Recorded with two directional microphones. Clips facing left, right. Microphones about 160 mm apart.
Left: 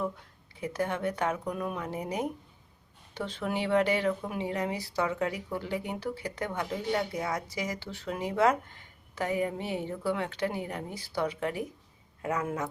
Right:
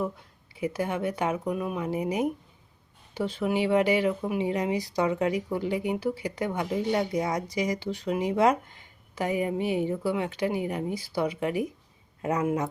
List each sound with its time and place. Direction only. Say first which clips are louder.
0.5 s speech: right 3 dB; 10° right (ahead or behind)